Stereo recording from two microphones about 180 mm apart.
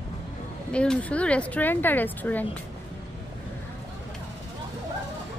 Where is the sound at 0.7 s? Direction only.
5° left (ahead or behind).